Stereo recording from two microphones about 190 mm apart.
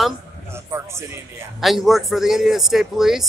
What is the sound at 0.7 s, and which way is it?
Speech, 15° right (ahead or behind).